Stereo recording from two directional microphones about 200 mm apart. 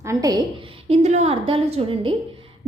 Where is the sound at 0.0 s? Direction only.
15° right (ahead or behind).